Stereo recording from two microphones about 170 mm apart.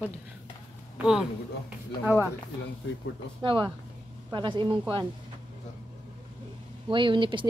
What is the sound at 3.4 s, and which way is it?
A woman's voice, 30° right (ahead or behind).